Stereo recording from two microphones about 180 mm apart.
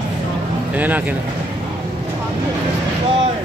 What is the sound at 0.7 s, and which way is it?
Speech, 10° right (ahead or behind).